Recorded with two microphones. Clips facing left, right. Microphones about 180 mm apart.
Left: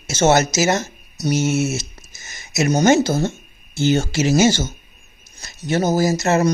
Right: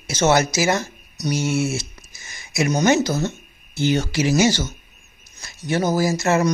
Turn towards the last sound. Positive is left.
turn(degrees=35)  # may be behind; listen again after turning